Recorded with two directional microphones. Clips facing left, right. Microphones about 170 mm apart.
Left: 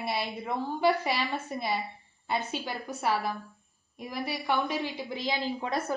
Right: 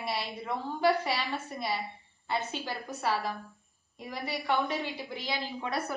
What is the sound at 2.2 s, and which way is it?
Speech, 15° left (ahead or behind).